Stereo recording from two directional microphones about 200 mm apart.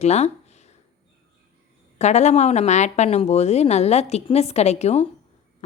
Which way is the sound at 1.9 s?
35° left (ahead or behind).